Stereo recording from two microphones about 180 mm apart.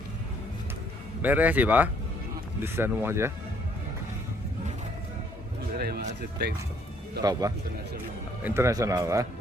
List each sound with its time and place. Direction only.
1.2 s speech: 10° right (ahead or behind)
7.2 s speech: 20° right (ahead or behind)